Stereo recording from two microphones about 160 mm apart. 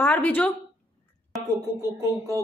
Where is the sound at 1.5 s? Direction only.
20° right (ahead or behind).